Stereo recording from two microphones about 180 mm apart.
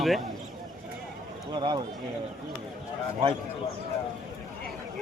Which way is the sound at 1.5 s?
25° right (ahead or behind).